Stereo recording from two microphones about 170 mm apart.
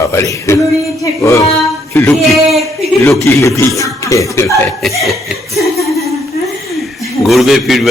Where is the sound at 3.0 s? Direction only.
15° left (ahead or behind).